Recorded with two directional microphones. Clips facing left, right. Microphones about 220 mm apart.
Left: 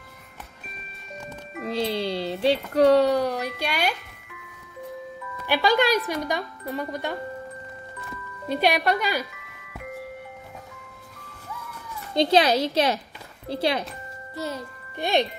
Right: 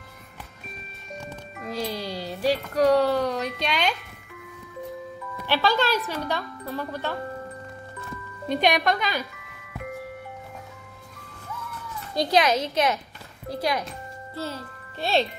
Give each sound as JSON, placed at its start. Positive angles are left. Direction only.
{"t": 1.8, "sound": "speech", "side_deg": 25}
{"t": 3.2, "sound": "speech", "side_deg": 10}
{"t": 5.5, "sound": "speech", "side_deg": 15}
{"t": 8.5, "sound": "speech", "side_deg": 5}
{"t": 12.2, "sound": "a woman's voice", "side_deg": 30}
{"t": 14.3, "sound": "music", "side_deg": 15}